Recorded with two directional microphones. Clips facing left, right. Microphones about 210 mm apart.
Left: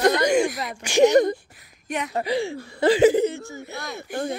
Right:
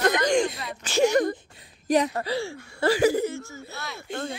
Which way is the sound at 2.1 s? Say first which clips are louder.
Left 4 dB; 15° left (ahead or behind).